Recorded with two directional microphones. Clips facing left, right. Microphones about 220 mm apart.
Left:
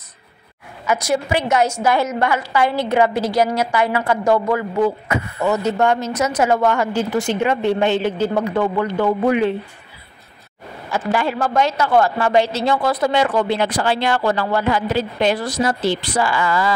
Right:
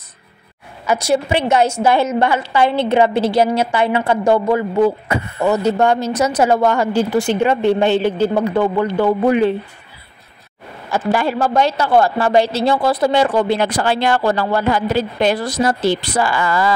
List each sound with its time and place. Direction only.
0.8 s a woman's voice: 30° right (ahead or behind)
10.9 s a woman's voice: 40° right (ahead or behind)
13.6 s speech: 45° right (ahead or behind)